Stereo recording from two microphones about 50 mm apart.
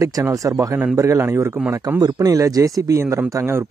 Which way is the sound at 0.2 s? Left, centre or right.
Right.